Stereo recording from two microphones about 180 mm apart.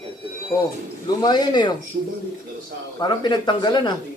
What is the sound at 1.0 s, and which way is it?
Speech, 25° left (ahead or behind).